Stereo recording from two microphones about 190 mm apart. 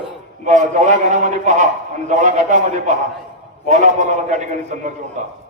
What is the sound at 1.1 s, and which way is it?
A man's voice, 40° right (ahead or behind).